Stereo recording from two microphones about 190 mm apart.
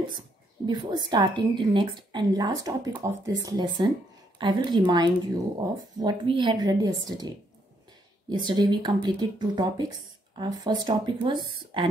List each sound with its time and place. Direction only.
0.7 s speech: 25° right (ahead or behind)
8.3 s speech: 25° right (ahead or behind)